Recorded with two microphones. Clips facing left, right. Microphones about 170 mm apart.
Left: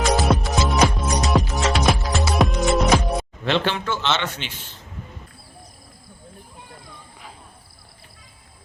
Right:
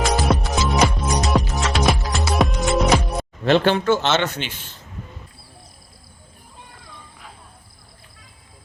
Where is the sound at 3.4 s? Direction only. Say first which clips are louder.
Right 8 dB; 45° right (ahead or behind).